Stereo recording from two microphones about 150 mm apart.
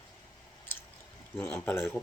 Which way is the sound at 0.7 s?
15° left (ahead or behind).